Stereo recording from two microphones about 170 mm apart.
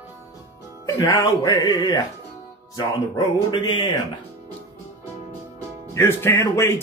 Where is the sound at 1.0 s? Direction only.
20° left (ahead or behind).